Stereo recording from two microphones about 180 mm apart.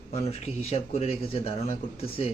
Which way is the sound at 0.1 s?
35° left (ahead or behind).